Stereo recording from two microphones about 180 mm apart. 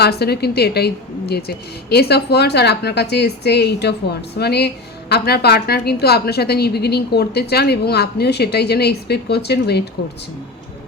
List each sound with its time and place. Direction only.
0.0 s a woman's voice: 65° left (ahead or behind)